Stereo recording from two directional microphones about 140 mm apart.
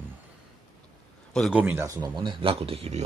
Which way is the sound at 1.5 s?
10° right (ahead or behind).